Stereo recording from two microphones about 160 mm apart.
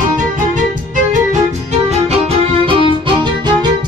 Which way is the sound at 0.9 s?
50° right (ahead or behind).